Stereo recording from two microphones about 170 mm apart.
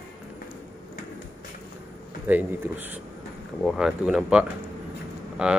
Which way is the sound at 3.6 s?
Centre (ahead or behind).